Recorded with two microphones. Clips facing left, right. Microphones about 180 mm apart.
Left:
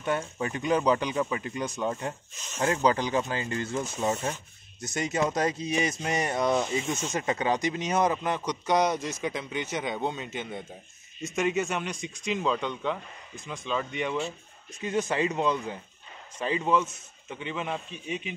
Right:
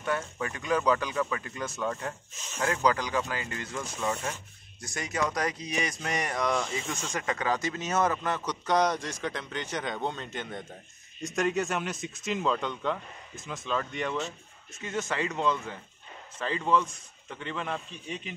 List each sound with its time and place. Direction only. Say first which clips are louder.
0.0 s speech: left 2 dB; 25° left (ahead or behind); by 14.3 s 10° left (ahead or behind)
14.8 s speech: left 4 dB; 20° left (ahead or behind)